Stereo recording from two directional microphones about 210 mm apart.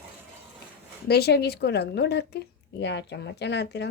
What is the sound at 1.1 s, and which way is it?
Speech, 50° left (ahead or behind).